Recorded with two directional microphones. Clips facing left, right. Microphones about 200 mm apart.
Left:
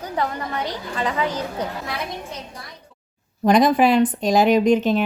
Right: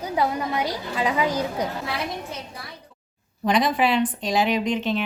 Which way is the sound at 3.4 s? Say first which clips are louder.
Left 6 dB; 45° left (ahead or behind).